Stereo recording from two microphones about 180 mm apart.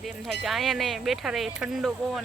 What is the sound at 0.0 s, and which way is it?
Speech, centre (ahead or behind).